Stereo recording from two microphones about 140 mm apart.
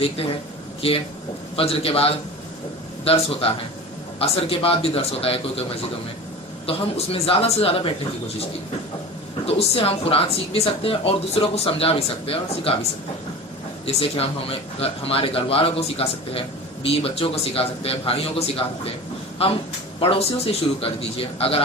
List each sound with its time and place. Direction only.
0.8 s speech: 45° left (ahead or behind)
6.7 s speech: 45° left (ahead or behind)
9.5 s speech: 45° left (ahead or behind)
13.8 s speech: 45° left (ahead or behind)